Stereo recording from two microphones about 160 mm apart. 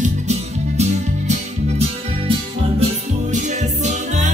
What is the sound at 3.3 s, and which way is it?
Music, 50° right (ahead or behind).